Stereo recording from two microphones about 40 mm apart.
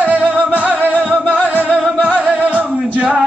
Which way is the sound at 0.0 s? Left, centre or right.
Right.